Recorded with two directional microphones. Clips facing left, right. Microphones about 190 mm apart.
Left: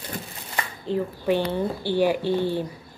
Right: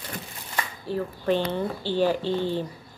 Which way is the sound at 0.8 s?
15° left (ahead or behind).